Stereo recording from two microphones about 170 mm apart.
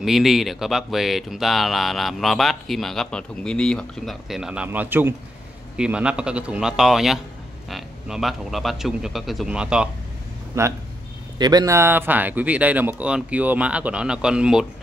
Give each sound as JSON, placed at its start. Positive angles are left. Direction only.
{"t": 0.0, "sound": "speech", "side_deg": 0}